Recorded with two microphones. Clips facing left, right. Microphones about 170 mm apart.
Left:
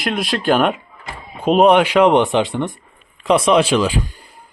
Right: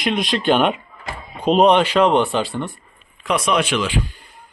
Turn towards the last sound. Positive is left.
turn(degrees=35)  # may be behind; listen again after turning